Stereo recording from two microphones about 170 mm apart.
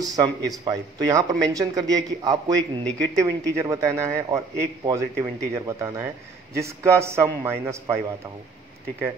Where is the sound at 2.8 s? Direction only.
5° left (ahead or behind).